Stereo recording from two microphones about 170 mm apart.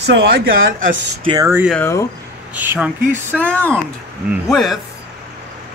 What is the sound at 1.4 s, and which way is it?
Speech, 15° right (ahead or behind).